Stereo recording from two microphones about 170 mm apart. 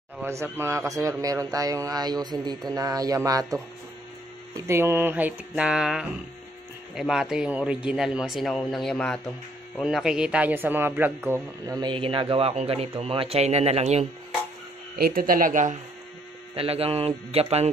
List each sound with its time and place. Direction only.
0.2 s speech: 15° right (ahead or behind)
4.6 s a sound: 15° right (ahead or behind)
7.0 s speech: centre (ahead or behind); by 14.0 s 40° right (ahead or behind)
15.0 s speech: 60° right (ahead or behind)
16.5 s a man's voice: 35° right (ahead or behind)